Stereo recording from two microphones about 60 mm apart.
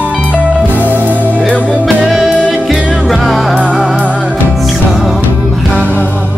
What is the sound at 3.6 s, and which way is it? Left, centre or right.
Music, centre.